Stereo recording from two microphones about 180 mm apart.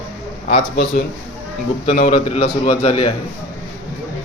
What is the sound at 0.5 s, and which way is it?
A man's voice, 40° left (ahead or behind).